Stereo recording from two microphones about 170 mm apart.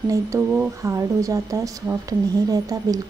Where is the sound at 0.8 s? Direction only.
20° right (ahead or behind).